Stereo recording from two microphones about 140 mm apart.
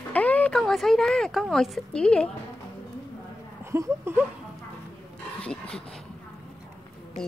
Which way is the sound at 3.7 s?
20° right (ahead or behind).